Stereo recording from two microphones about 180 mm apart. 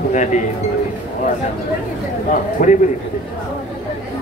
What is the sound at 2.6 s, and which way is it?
Speech, 45° left (ahead or behind).